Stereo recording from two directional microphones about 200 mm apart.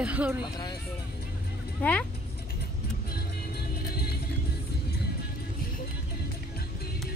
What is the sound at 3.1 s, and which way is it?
Music, 50° left (ahead or behind).